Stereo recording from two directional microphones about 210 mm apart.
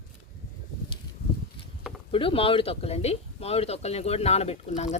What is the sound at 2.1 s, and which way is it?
Speech, 25° left (ahead or behind).